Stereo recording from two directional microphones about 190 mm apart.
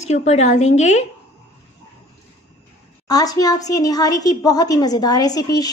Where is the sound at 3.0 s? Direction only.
20° left (ahead or behind).